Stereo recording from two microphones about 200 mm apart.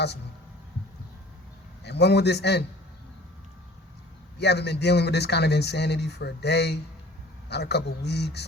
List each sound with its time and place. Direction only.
1.8 s speech: 55° left (ahead or behind)
4.4 s speech: 55° left (ahead or behind)